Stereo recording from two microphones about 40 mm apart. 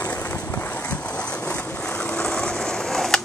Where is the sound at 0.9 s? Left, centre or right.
Left.